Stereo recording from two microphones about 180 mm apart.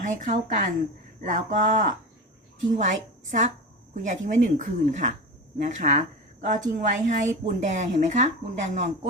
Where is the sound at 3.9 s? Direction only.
45° right (ahead or behind).